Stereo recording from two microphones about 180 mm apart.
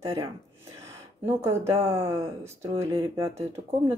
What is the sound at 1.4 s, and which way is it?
Speech, 15° right (ahead or behind).